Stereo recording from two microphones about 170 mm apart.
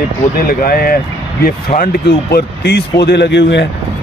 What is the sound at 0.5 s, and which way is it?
Speech, 60° left (ahead or behind).